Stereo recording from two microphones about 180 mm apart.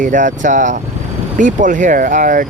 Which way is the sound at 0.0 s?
45° right (ahead or behind).